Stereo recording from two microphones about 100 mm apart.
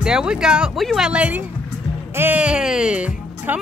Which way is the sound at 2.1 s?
20° right (ahead or behind).